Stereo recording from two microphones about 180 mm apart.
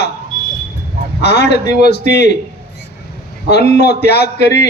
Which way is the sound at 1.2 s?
65° left (ahead or behind).